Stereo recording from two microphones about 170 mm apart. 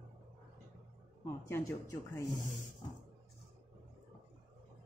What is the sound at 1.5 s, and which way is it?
Speech, 15° left (ahead or behind).